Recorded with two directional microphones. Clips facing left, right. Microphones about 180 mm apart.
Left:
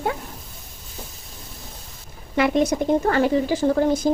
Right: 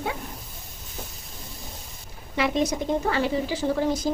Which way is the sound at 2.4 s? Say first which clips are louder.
Left 5 dB; 55° left (ahead or behind).